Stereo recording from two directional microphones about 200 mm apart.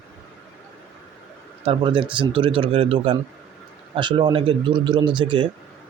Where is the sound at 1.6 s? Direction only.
25° right (ahead or behind).